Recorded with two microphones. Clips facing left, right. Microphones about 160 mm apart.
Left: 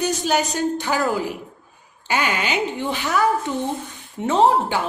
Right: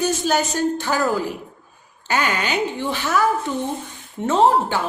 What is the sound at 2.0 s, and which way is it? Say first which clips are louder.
A woman's voice: right 1 dB; 15° left (ahead or behind).